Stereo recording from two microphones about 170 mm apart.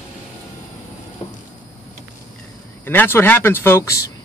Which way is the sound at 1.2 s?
30° left (ahead or behind).